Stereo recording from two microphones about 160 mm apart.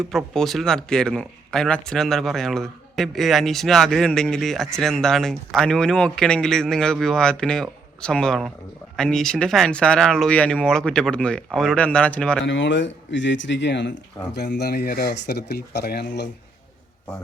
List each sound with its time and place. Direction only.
0.1 s speech: centre (ahead or behind)
12.5 s speech: 90° left